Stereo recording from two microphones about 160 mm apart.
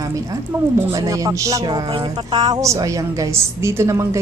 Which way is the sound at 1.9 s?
40° right (ahead or behind).